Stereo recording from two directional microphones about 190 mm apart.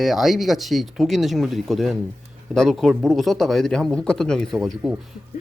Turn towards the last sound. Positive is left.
turn(degrees=0)  # may be behind; listen again after turning